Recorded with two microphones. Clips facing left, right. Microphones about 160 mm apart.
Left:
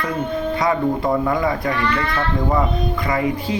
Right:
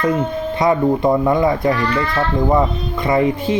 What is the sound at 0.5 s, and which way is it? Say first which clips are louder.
Speech: right 5 dB; 25° right (ahead or behind).